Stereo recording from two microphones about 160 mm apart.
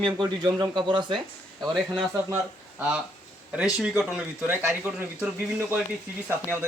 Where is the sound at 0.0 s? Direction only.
30° right (ahead or behind).